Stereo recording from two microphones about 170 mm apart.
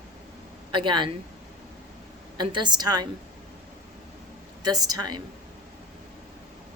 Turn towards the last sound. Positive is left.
turn(degrees=-25)  # may be behind; listen again after turning